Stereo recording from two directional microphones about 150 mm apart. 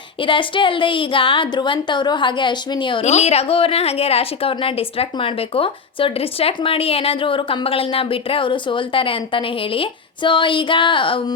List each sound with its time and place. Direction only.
0.2 s a woman's voice: 35° left (ahead or behind)
3.0 s a woman's voice: 45° left (ahead or behind)